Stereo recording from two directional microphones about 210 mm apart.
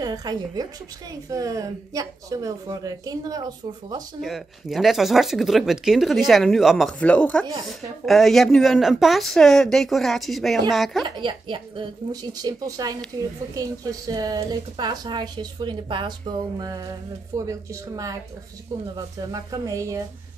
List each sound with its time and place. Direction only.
0.0 s a woman's voice: 20° right (ahead or behind)
4.2 s speech: centre (ahead or behind)
11.1 s a woman's voice: 20° right (ahead or behind)